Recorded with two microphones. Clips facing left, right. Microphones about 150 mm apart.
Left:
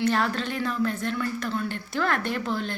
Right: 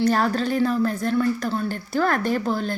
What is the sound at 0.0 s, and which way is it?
Speech, 40° right (ahead or behind).